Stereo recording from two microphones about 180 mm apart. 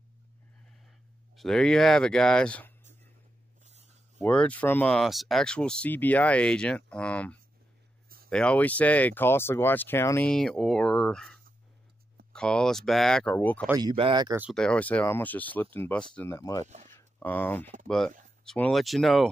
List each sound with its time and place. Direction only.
0.7 s speech: centre (ahead or behind)
4.2 s speech: 5° left (ahead or behind)
10.3 s speech: 5° left (ahead or behind)
13.7 s speech: 20° right (ahead or behind)
14.5 s speech: 5° left (ahead or behind)
16.6 s speech: 40° right (ahead or behind)
16.9 s a sound: 10° left (ahead or behind)
17.8 s speech: 5° left (ahead or behind)